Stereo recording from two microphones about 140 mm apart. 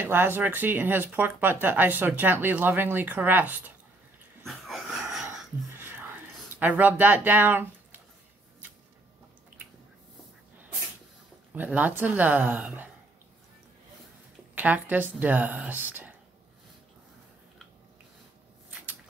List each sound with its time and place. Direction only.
0.0 s speech: 15° right (ahead or behind)
4.5 s dog: centre (ahead or behind)
5.8 s a sound: 15° right (ahead or behind)
6.6 s speech: 15° right (ahead or behind)
11.5 s speech: 10° right (ahead or behind)
14.5 s speech: 10° right (ahead or behind)